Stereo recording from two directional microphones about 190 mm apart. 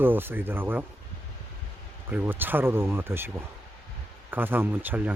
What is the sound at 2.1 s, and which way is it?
Speech, 10° right (ahead or behind).